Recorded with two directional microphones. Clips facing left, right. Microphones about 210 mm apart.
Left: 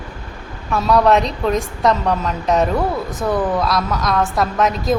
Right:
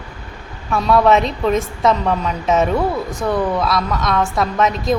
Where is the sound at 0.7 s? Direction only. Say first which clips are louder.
Even; centre (ahead or behind).